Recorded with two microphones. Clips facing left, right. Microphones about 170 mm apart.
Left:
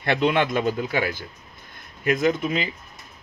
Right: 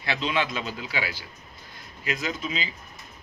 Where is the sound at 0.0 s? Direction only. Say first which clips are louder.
Left 7 dB; 55° left (ahead or behind).